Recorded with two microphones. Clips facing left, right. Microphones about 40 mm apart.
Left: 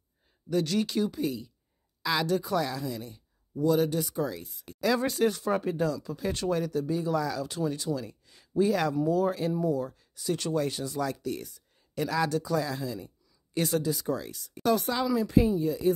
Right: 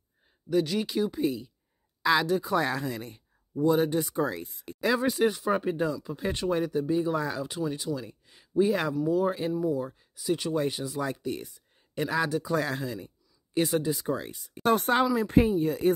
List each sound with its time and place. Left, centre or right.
0.5 s speech: centre
2.5 s speech: right
3.6 s speech: right
4.7 s speech: centre
7.5 s speech: centre
12.5 s speech: right
13.6 s speech: centre
14.6 s speech: right